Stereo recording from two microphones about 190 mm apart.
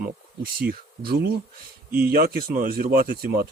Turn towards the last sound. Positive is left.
turn(degrees=-50)  # may be behind; listen again after turning